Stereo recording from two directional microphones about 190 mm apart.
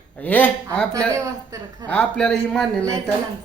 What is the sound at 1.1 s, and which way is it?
Speech, 15° right (ahead or behind).